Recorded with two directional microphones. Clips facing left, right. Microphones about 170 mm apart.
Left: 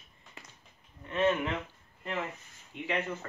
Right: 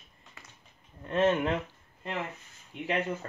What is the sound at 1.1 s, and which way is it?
Speech, 40° right (ahead or behind).